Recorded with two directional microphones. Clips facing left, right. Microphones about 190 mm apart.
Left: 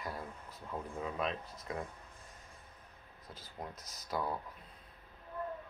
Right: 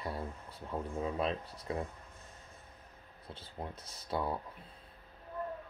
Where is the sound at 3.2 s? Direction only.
30° right (ahead or behind).